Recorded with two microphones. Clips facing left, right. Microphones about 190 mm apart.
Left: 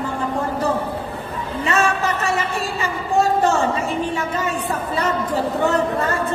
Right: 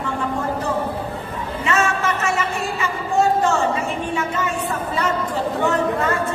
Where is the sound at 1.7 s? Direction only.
35° left (ahead or behind).